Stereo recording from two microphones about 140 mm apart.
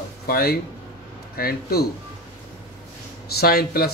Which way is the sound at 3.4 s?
90° left.